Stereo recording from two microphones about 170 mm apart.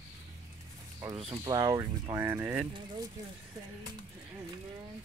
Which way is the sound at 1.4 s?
20° right (ahead or behind).